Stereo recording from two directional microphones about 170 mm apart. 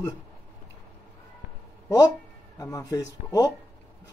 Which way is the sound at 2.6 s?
20° left (ahead or behind).